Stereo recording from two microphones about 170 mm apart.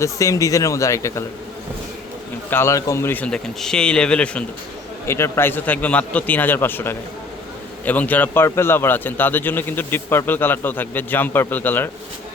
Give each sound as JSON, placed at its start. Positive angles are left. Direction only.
{"t": 0.0, "sound": "speech", "side_deg": 20}
{"t": 2.5, "sound": "a man's voice", "side_deg": 15}